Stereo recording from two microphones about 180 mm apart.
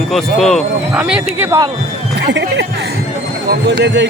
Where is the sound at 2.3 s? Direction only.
75° right (ahead or behind).